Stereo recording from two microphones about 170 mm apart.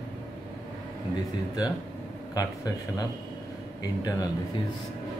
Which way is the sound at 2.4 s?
20° left (ahead or behind).